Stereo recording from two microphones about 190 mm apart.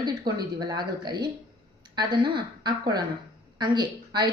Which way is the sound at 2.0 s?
25° right (ahead or behind).